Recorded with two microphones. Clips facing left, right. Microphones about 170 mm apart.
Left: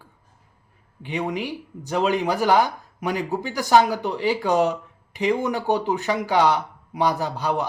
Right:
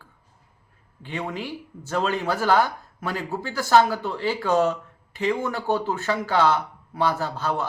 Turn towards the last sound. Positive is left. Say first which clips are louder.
# left 2 dB
turn(degrees=15)  # may be behind; listen again after turning